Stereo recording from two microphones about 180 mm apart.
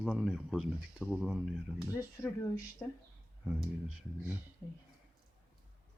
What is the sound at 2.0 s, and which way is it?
Speech, 15° left (ahead or behind).